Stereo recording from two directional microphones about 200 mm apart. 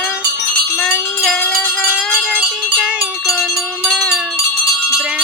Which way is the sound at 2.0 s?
Centre (ahead or behind).